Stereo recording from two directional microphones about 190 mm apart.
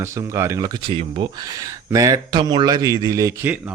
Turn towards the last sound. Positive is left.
turn(degrees=-15)  # may be behind; listen again after turning